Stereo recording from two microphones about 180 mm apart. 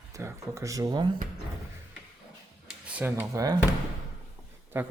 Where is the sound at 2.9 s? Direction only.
10° right (ahead or behind).